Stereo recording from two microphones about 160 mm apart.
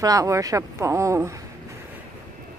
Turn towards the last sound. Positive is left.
turn(degrees=-20)  # may be behind; listen again after turning